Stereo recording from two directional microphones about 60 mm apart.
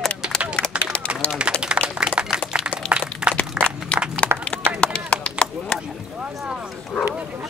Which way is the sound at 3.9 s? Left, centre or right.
Centre.